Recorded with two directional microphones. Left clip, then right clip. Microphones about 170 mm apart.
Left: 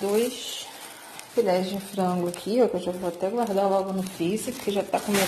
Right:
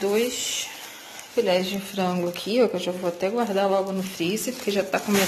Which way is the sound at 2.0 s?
5° left (ahead or behind).